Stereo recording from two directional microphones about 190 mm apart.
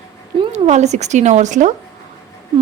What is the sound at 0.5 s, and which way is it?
A woman's voice, 35° right (ahead or behind).